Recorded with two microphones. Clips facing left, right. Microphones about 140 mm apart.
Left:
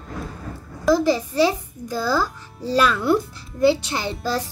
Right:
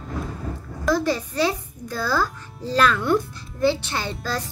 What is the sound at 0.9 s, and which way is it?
A child's voice, 10° left (ahead or behind).